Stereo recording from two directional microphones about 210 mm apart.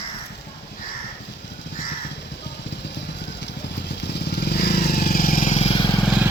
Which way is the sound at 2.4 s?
55° left (ahead or behind).